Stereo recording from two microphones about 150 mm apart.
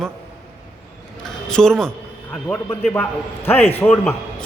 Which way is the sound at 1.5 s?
5° left (ahead or behind).